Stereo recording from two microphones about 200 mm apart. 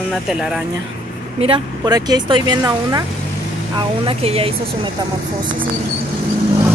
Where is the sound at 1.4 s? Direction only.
25° right (ahead or behind).